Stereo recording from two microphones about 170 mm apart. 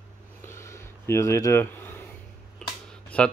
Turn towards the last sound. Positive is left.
turn(degrees=10)  # may be behind; listen again after turning